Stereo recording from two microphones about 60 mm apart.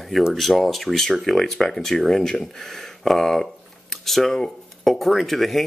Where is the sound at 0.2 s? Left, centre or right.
Centre.